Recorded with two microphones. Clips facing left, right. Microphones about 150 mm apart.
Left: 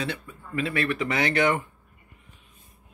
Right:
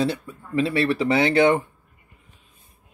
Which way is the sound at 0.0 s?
35° right (ahead or behind).